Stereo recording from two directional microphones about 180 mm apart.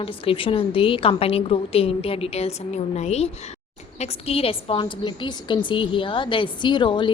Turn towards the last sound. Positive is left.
turn(degrees=25)  # may be behind; listen again after turning